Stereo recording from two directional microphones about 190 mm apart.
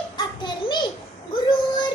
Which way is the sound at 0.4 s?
25° left (ahead or behind).